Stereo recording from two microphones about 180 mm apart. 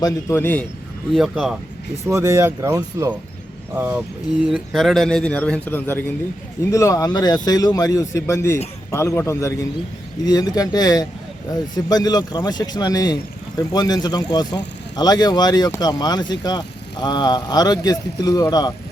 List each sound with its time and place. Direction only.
0.0 s a man's voice: 15° left (ahead or behind)
1.1 s a man's voice: centre (ahead or behind)
2.2 s a man's voice: 15° right (ahead or behind); by 18.7 s 20° left (ahead or behind)